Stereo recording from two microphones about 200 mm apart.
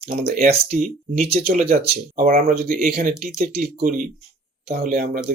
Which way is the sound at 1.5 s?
45° right (ahead or behind).